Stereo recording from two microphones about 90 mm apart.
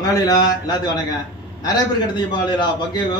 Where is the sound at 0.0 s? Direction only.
45° left (ahead or behind).